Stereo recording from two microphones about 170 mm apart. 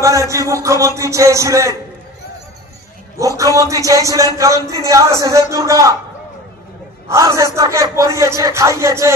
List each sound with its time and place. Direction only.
0.0 s a man's voice: 20° right (ahead or behind)
3.2 s a man's voice: 20° right (ahead or behind)
7.1 s speech: 20° right (ahead or behind)